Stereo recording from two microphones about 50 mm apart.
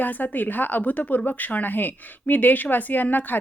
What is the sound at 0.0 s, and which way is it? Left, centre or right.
A woman's voice, left.